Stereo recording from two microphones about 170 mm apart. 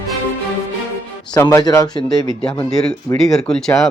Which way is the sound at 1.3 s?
20° left (ahead or behind).